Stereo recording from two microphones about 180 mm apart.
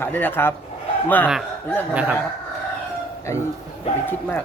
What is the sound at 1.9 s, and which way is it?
Speech, 10° right (ahead or behind).